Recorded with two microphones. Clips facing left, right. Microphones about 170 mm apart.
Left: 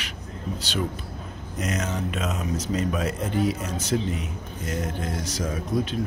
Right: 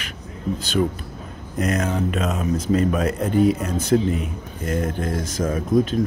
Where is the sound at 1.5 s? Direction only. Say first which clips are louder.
Right 6 dB; 55° right (ahead or behind).